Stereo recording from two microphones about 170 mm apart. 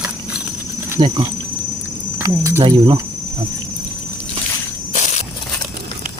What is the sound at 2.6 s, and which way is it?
Cricket, 25° right (ahead or behind).